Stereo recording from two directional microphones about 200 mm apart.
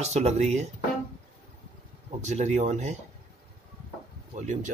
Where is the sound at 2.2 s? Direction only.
35° right (ahead or behind).